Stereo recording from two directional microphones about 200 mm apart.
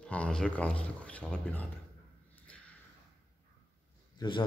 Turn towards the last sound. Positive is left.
turn(degrees=25)  # may be behind; listen again after turning